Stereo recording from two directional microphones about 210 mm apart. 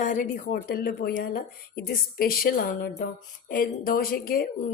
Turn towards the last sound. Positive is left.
turn(degrees=45)  # may be behind; listen again after turning